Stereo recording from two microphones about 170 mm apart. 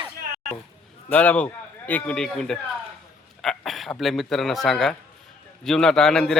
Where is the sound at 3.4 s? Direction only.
Centre (ahead or behind).